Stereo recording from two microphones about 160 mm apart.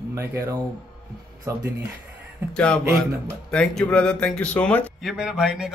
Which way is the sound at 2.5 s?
5° left (ahead or behind).